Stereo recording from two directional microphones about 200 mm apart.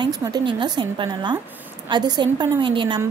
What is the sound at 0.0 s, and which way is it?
Speech, 20° right (ahead or behind).